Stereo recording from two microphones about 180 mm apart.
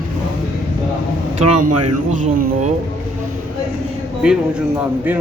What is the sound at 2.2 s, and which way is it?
Speech, 50° right (ahead or behind).